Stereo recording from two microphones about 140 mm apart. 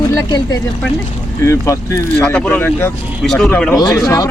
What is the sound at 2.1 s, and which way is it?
Speech, 10° left (ahead or behind).